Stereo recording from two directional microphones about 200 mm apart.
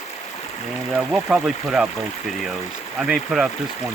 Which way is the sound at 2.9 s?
Centre (ahead or behind).